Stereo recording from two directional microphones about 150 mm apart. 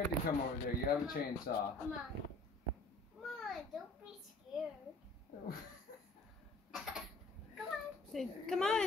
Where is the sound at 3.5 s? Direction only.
Centre (ahead or behind).